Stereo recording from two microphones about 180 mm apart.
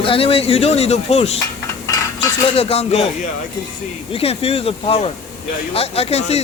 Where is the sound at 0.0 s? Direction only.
30° left (ahead or behind).